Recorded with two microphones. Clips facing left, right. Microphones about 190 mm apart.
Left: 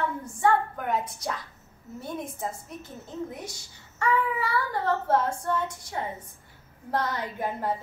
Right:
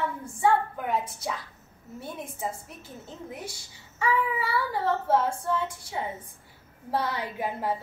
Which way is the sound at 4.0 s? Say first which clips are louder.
Left 1 dB; 5° right (ahead or behind).